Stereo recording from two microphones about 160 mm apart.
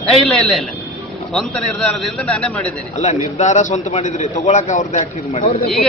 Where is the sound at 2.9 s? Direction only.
45° left (ahead or behind).